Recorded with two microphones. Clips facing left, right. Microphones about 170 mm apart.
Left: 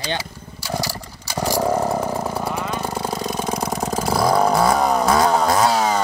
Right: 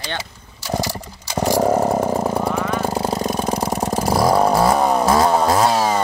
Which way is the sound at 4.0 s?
10° right (ahead or behind).